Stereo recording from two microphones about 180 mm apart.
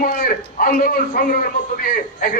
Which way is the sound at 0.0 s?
50° left (ahead or behind).